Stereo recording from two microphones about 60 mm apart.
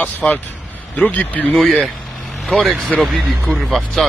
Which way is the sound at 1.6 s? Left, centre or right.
Centre.